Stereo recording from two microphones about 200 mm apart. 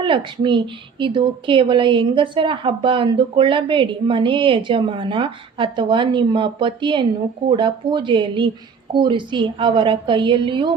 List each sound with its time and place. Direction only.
0.0 s a woman's voice: 25° right (ahead or behind)